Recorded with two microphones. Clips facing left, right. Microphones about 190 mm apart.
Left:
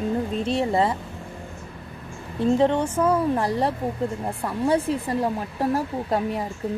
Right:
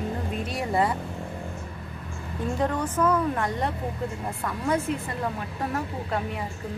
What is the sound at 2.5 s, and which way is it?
Speech, 25° left (ahead or behind).